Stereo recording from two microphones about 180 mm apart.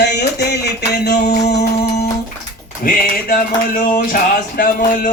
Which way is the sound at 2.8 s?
50° left (ahead or behind).